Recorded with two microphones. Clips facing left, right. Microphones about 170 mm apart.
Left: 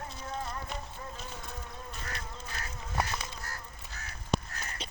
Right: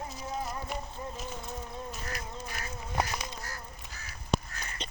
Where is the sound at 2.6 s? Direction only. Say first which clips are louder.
Right 1 dB; 15° right (ahead or behind).